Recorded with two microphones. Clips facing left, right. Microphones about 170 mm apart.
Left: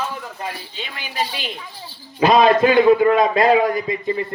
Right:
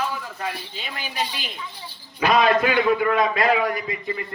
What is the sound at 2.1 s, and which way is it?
A man's voice, 25° left (ahead or behind).